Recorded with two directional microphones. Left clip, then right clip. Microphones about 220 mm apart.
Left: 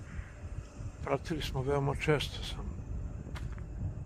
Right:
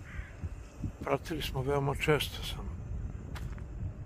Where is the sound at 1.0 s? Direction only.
5° right (ahead or behind).